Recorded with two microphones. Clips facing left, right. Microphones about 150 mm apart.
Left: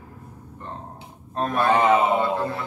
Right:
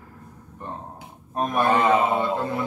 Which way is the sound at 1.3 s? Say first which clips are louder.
Even; 15° right (ahead or behind).